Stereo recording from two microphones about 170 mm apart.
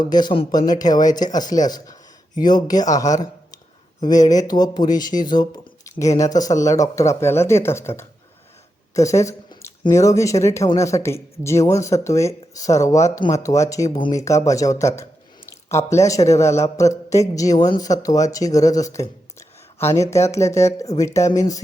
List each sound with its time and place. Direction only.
0.0 s a man's voice: 25° left (ahead or behind)
9.0 s a sound: 20° left (ahead or behind)
9.8 s a man's voice: 20° left (ahead or behind)